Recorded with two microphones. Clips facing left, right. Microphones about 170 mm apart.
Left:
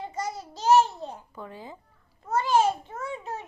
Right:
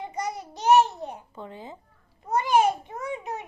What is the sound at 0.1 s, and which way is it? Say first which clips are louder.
Babbling: right 1 dB; 20° right (ahead or behind).